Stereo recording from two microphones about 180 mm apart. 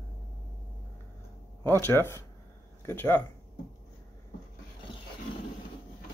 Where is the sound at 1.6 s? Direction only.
10° left (ahead or behind).